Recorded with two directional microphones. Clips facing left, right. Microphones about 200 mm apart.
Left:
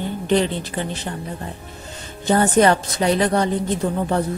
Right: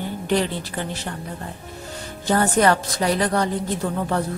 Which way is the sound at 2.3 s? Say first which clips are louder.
Left 3 dB; 20° left (ahead or behind).